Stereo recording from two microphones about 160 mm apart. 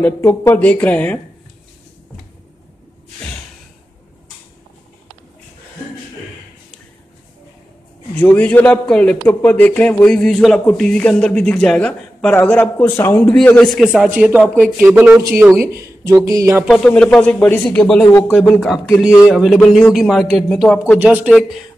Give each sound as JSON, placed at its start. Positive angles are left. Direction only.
{"t": 0.0, "sound": "a man's voice", "side_deg": 15}
{"t": 8.1, "sound": "a man's voice", "side_deg": 10}
{"t": 16.6, "sound": "speech", "side_deg": 5}
{"t": 21.0, "sound": "speech", "side_deg": -10}